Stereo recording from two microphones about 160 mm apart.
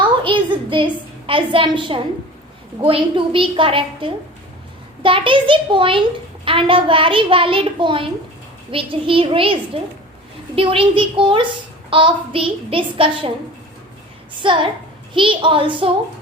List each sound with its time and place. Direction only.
0.0 s a sound: 30° right (ahead or behind)
1.3 s a child's voice: 30° right (ahead or behind)
14.4 s a child's voice: 30° right (ahead or behind)